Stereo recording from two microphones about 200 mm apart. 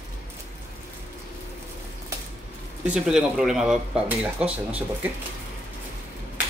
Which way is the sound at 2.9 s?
5° right (ahead or behind).